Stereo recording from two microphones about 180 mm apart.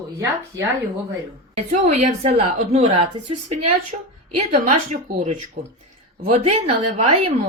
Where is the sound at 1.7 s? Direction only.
40° right (ahead or behind).